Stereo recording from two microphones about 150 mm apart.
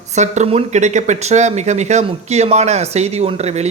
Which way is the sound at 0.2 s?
50° right (ahead or behind).